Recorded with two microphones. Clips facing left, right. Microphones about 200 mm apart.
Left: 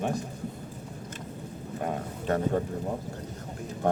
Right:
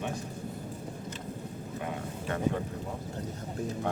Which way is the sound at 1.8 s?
45° left (ahead or behind).